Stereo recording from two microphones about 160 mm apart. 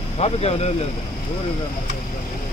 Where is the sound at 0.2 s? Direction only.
40° left (ahead or behind).